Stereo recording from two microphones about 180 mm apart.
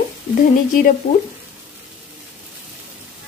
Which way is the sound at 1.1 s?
40° left (ahead or behind).